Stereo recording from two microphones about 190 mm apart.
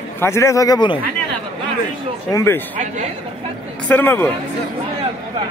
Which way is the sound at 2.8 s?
40° right (ahead or behind).